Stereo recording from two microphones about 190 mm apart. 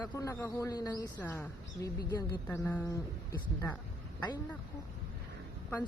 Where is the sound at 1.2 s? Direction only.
10° left (ahead or behind).